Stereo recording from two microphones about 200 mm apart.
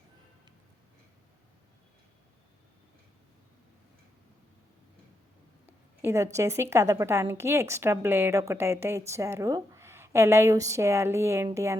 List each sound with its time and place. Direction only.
5.6 s a woman's voice: 10° right (ahead or behind)